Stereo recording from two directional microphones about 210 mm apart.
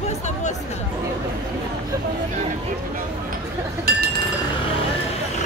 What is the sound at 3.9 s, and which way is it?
Speech, 45° right (ahead or behind).